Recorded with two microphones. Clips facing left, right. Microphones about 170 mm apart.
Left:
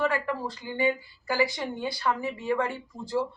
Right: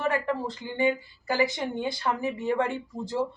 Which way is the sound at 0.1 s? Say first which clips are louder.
Right 2 dB; 20° right (ahead or behind).